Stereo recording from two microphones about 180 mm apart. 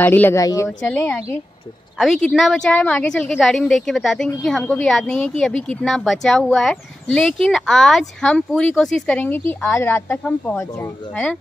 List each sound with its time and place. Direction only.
0.0 s a woman's voice: 10° left (ahead or behind)